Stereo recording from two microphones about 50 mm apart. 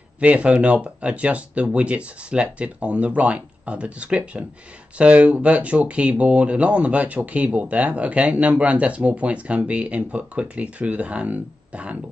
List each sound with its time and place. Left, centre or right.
0.2 s speech: right